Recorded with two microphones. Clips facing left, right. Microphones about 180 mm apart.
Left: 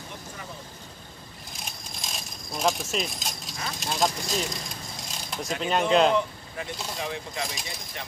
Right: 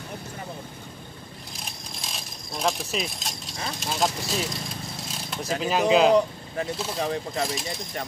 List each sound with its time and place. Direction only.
1.5 s coin: centre (ahead or behind)
3.8 s speech: centre (ahead or behind)
5.0 s a sound: centre (ahead or behind)
5.6 s speech: 5° right (ahead or behind)
7.0 s speech: 40° right (ahead or behind)